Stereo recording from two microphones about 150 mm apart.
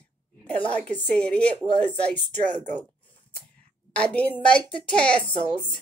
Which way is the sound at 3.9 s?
10° left (ahead or behind).